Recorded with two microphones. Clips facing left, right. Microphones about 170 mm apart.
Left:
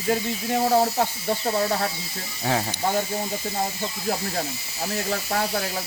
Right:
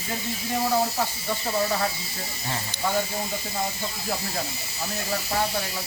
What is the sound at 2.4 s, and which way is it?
Speech, 90° left.